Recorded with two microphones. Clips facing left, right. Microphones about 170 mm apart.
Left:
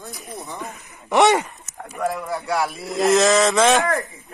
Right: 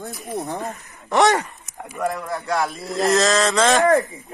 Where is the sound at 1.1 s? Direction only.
20° left (ahead or behind).